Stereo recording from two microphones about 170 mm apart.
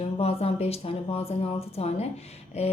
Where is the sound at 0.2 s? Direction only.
35° left (ahead or behind).